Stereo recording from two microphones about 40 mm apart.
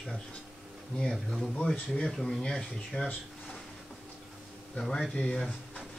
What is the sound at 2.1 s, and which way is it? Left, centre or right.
Speech, centre.